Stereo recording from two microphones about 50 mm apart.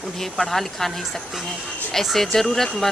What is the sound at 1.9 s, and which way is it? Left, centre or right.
Speech, centre.